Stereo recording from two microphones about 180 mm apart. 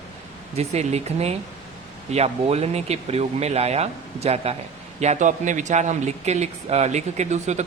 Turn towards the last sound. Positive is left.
turn(degrees=-40)  # may be behind; listen again after turning